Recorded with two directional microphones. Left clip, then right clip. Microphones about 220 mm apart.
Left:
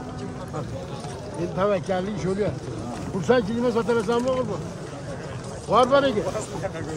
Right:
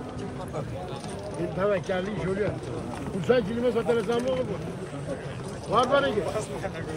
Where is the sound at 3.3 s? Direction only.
45° left (ahead or behind).